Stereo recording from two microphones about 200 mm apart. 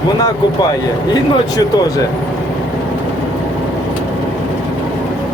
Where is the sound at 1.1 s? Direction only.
20° left (ahead or behind).